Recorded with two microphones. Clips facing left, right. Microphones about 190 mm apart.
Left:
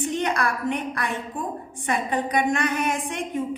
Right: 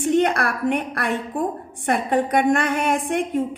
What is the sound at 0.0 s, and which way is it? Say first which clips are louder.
A woman's voice: right 6 dB; 55° right (ahead or behind).